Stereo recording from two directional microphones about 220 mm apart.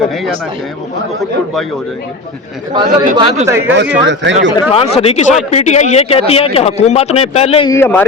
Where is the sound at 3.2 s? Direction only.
20° right (ahead or behind).